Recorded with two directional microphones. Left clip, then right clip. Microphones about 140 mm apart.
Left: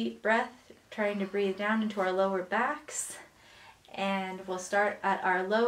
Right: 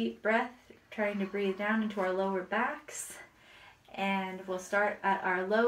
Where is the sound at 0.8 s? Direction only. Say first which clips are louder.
Left 2 dB; 25° left (ahead or behind).